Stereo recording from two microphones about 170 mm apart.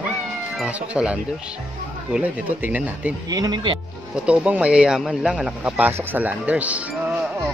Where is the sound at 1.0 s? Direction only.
Centre (ahead or behind).